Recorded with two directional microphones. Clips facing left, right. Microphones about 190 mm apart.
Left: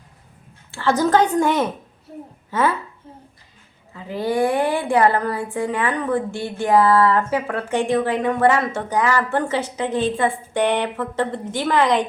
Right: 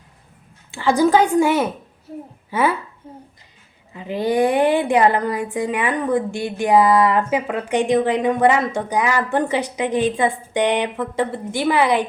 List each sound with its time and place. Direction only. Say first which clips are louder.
0.7 s a woman's voice: right 2 dB; 15° right (ahead or behind)